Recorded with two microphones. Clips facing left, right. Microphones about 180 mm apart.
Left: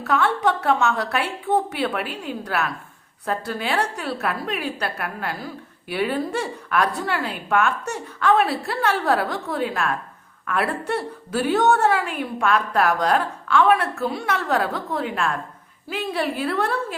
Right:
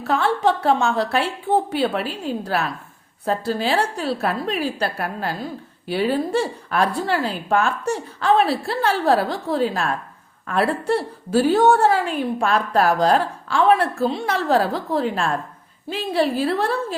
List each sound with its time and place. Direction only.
0.0 s a woman's voice: 30° right (ahead or behind)